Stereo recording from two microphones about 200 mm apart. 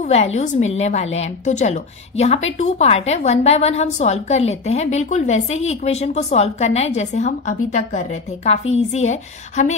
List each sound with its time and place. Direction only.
0.0 s a woman's voice: 35° left (ahead or behind)